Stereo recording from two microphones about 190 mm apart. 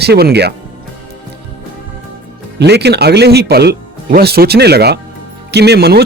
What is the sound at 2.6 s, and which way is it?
Speech, 60° right (ahead or behind).